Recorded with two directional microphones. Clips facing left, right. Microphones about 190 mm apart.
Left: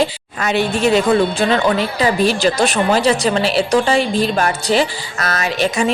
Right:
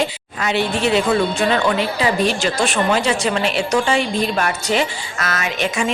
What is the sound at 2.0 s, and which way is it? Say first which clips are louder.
A woman's voice: left 3 dB; 35° left (ahead or behind).